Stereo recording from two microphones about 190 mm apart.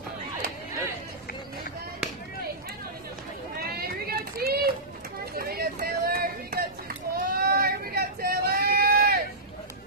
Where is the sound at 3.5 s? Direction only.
55° right (ahead or behind).